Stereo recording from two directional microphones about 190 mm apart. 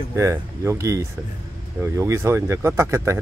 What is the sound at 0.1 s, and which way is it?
Speech, 15° right (ahead or behind).